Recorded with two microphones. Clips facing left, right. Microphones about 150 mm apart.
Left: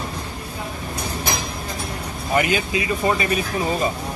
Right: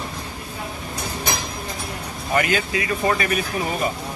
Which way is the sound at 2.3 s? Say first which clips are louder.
Left 1 dB; 20° left (ahead or behind).